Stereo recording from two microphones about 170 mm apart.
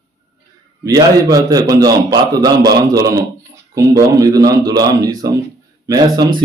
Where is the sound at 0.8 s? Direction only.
20° right (ahead or behind).